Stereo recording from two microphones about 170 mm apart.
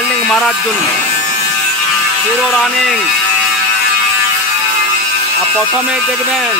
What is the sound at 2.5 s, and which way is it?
Speech, centre (ahead or behind).